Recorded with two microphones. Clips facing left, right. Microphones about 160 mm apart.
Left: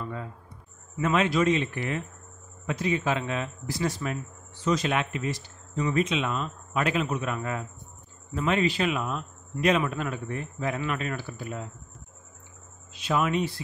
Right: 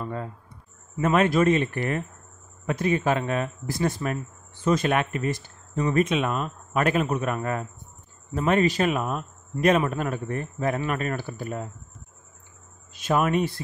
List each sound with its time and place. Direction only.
0.0 s a sound: 45° right (ahead or behind)
0.9 s a man's voice: 50° right (ahead or behind)
12.9 s a man's voice: 50° right (ahead or behind)